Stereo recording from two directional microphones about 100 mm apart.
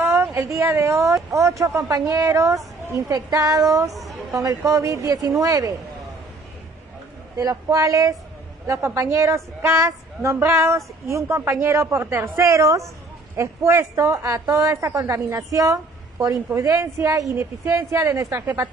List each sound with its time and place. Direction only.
0.0 s speech: 25° right (ahead or behind)
7.3 s a woman's voice: 35° right (ahead or behind)